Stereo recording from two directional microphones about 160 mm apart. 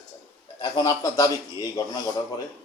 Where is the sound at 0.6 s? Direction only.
25° left (ahead or behind).